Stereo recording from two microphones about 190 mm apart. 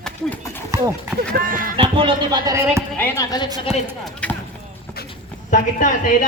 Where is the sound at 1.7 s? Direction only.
25° right (ahead or behind).